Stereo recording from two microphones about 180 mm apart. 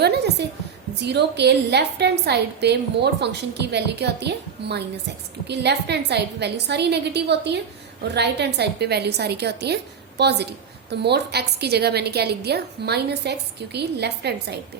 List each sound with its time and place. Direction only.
0.0 s a woman's voice: 65° right (ahead or behind)